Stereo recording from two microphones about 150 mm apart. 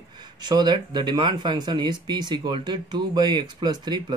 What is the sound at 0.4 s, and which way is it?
Speech, 30° right (ahead or behind).